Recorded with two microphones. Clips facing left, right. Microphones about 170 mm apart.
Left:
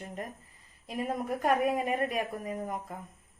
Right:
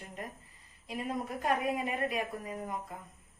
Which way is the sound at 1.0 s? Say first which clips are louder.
Left 4 dB; 50° left (ahead or behind).